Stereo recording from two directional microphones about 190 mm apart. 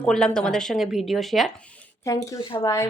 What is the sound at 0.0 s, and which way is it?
Speech, 5° left (ahead or behind).